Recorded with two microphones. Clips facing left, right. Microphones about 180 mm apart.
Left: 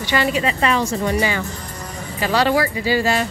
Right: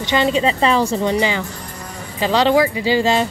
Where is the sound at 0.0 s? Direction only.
20° right (ahead or behind).